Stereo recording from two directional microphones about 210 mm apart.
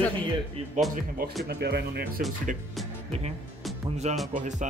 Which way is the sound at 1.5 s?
50° right (ahead or behind).